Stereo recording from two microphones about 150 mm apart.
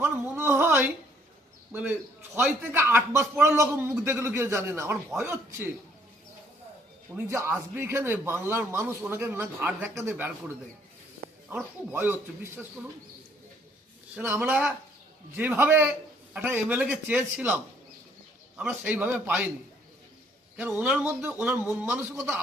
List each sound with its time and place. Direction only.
0.0 s a sound: 15° right (ahead or behind)
1.7 s a man's voice: 10° right (ahead or behind)
7.2 s a man's voice: 20° right (ahead or behind)
11.4 s a man's voice: 10° right (ahead or behind)
14.1 s a man's voice: 15° right (ahead or behind)
20.6 s a man's voice: 10° right (ahead or behind)